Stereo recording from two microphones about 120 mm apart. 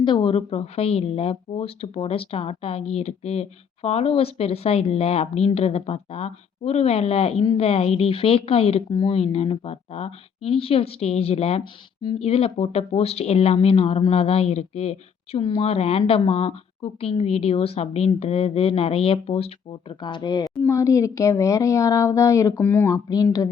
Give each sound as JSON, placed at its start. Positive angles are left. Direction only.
{"t": 0.0, "sound": "speech", "side_deg": 40}
{"t": 9.0, "sound": "speech", "side_deg": 40}
{"t": 9.2, "sound": "speech", "side_deg": 60}
{"t": 15.4, "sound": "speech", "side_deg": 40}
{"t": 15.6, "sound": "speech", "side_deg": 60}
{"t": 20.0, "sound": "a woman's voice", "side_deg": 40}
{"t": 22.9, "sound": "a woman's voice", "side_deg": 30}